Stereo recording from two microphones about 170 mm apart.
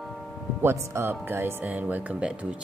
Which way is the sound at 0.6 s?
15° right (ahead or behind).